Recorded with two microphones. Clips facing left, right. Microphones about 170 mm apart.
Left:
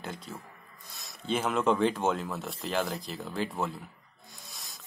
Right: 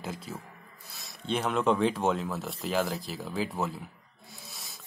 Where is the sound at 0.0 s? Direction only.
Centre (ahead or behind).